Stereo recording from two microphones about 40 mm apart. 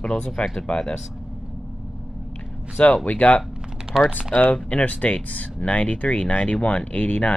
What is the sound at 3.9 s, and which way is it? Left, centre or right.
Speech, centre.